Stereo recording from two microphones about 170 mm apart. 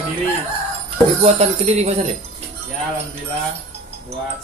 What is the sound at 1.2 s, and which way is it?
Speech, 40° right (ahead or behind).